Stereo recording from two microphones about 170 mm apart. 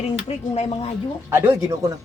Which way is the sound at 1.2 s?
15° right (ahead or behind).